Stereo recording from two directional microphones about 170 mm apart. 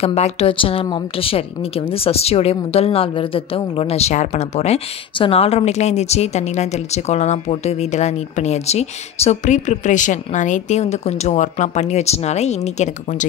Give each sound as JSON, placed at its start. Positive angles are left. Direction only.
{"t": 0.0, "sound": "a woman's voice", "side_deg": 35}